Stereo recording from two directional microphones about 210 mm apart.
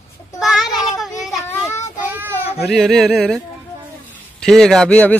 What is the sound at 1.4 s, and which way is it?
Child singing, 15° left (ahead or behind).